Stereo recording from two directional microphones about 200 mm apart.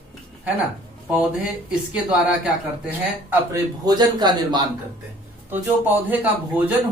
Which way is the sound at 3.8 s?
20° right (ahead or behind).